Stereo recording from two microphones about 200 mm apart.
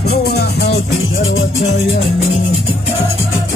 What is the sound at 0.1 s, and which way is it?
Music, 55° left (ahead or behind).